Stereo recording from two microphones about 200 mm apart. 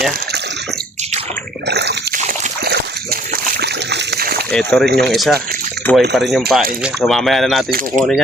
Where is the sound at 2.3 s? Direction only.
50° right (ahead or behind).